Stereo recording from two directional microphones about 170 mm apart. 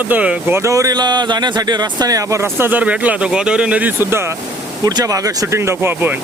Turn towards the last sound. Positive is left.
turn(degrees=-15)  # may be behind; listen again after turning